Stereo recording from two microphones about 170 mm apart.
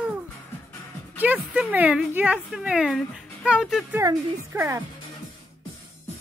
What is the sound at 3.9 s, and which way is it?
Speech, 15° right (ahead or behind).